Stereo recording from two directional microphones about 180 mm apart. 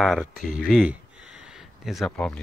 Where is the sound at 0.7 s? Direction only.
5° right (ahead or behind).